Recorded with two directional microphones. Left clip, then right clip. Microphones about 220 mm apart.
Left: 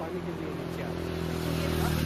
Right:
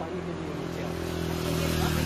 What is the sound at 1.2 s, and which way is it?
Vehicle, 50° right (ahead or behind).